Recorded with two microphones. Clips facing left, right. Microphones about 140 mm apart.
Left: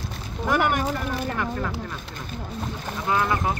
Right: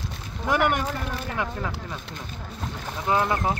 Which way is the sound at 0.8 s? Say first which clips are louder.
Left 3 dB; 15° left (ahead or behind).